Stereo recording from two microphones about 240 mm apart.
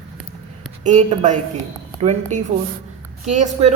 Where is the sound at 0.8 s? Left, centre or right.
Right.